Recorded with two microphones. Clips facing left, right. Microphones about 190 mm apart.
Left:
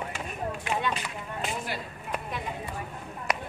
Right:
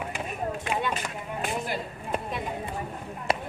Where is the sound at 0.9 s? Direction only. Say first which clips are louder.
Right 2 dB; 45° right (ahead or behind).